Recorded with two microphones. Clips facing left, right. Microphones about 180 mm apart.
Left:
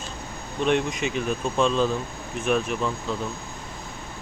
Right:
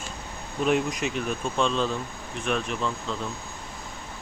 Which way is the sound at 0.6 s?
5° right (ahead or behind).